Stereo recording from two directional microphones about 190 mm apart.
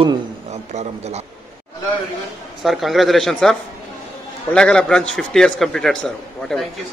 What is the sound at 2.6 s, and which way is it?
A man's voice, centre (ahead or behind).